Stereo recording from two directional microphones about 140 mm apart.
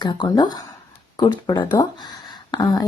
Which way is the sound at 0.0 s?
30° left (ahead or behind).